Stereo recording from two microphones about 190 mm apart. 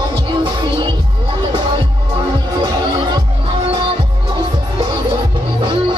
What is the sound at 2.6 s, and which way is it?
Music, 25° right (ahead or behind).